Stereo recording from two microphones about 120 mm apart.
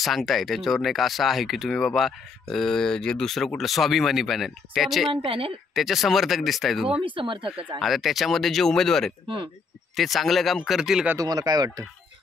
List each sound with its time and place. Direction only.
0.0 s speech: centre (ahead or behind)
5.1 s speech: 50° right (ahead or behind)
5.8 s speech: centre (ahead or behind)
7.0 s speech: 45° right (ahead or behind)
7.8 s speech: centre (ahead or behind)
11.1 s speech: 35° right (ahead or behind)